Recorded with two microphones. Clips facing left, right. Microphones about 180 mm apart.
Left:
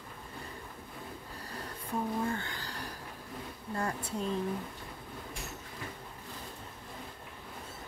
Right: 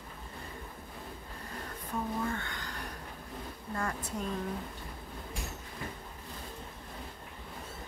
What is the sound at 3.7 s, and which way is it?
Speech, 30° left (ahead or behind).